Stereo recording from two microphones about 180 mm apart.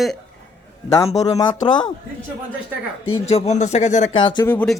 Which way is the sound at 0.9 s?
20° left (ahead or behind).